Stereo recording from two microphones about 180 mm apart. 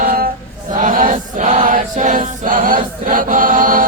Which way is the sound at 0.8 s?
50° right (ahead or behind).